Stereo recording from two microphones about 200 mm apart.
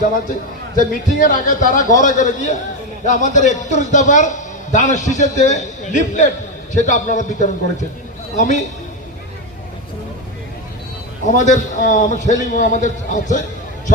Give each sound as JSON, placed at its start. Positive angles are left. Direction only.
{"t": 0.8, "sound": "a man's voice", "side_deg": 40}
{"t": 11.3, "sound": "a man's voice", "side_deg": 35}